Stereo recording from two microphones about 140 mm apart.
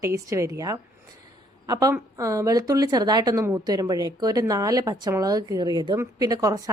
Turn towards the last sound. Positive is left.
turn(degrees=-25)  # may be behind; listen again after turning